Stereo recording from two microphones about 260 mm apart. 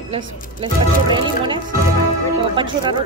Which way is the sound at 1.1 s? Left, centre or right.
Centre.